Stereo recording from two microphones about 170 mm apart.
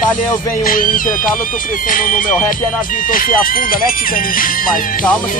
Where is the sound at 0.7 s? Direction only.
55° left (ahead or behind).